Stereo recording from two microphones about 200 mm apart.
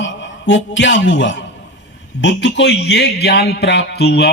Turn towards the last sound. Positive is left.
turn(degrees=55)  # may be behind; listen again after turning